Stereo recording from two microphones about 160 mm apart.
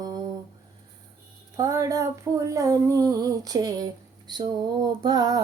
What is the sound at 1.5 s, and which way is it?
Female singing, 20° right (ahead or behind).